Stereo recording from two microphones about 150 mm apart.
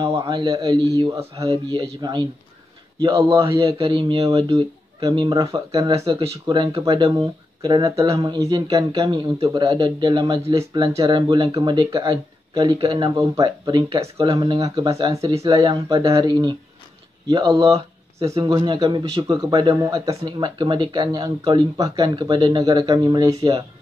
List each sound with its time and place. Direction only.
0.0 s speech: 25° right (ahead or behind)